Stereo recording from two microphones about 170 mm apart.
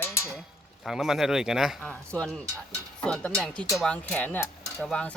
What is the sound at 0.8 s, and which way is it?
A man's voice, centre (ahead or behind).